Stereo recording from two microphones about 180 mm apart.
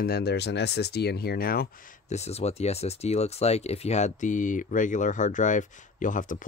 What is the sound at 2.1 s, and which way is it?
Speech, 35° left (ahead or behind).